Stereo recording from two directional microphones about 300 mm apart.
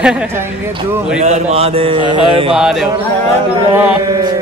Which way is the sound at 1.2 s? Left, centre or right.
Right.